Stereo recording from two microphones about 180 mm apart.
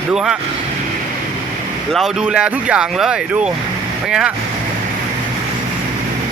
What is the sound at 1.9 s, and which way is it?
Speech, 5° right (ahead or behind).